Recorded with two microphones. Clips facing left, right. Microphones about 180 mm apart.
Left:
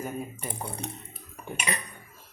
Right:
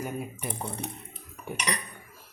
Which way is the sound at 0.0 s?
5° right (ahead or behind).